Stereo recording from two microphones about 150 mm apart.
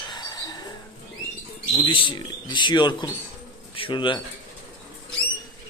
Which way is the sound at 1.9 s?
35° left (ahead or behind).